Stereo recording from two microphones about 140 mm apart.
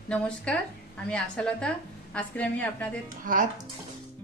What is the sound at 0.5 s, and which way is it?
A woman's voice, 10° left (ahead or behind).